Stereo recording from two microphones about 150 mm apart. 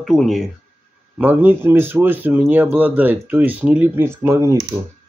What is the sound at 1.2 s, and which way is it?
Speech, 10° right (ahead or behind).